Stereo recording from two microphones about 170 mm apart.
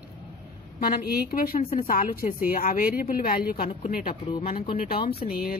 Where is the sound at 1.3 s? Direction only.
60° left (ahead or behind).